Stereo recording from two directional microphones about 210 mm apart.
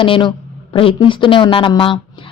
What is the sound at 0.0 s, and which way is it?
A woman's voice, 25° left (ahead or behind).